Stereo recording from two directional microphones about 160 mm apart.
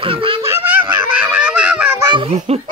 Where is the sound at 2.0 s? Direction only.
30° right (ahead or behind).